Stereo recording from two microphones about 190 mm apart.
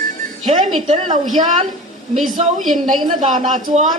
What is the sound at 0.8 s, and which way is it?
Speech, 35° right (ahead or behind).